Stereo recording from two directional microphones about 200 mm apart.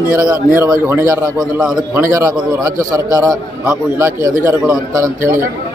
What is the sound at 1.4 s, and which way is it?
Speech, centre (ahead or behind).